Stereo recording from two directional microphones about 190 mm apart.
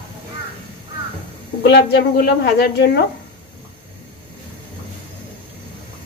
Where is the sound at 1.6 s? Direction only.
60° left (ahead or behind).